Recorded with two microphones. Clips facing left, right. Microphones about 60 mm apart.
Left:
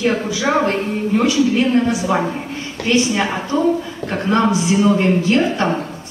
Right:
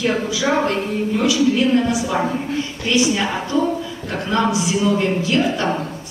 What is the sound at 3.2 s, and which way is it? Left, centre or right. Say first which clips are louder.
Speech: left 1 dB; left.